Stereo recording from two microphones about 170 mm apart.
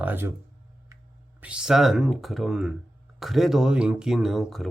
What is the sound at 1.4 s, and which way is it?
Speech, 5° right (ahead or behind).